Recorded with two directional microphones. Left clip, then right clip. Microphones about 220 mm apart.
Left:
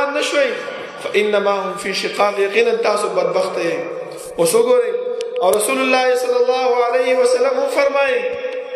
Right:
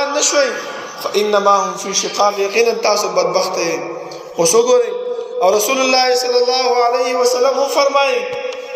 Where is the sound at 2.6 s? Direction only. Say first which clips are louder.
Right 1 dB; 30° right (ahead or behind).